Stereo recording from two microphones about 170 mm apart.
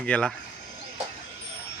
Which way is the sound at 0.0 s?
5° left (ahead or behind).